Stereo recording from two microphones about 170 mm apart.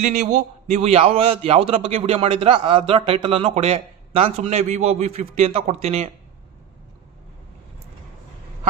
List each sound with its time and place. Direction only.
0.0 s a man's voice: 45° right (ahead or behind)